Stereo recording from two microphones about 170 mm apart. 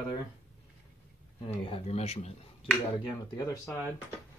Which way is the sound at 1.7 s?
35° left (ahead or behind).